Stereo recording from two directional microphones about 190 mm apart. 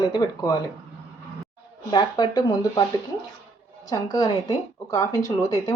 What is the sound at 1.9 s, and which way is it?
Speech, 25° left (ahead or behind).